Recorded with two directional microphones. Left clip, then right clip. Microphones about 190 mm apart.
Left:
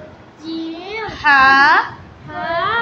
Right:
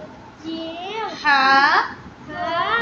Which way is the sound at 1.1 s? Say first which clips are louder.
Left 5 dB; 10° left (ahead or behind).